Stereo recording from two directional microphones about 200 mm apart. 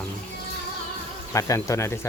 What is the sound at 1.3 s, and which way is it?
Speech, 15° left (ahead or behind).